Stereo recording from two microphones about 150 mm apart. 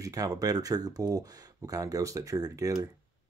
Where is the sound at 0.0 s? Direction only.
25° right (ahead or behind).